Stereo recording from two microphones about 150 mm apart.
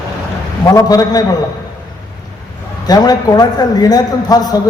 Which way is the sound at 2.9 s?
25° left (ahead or behind).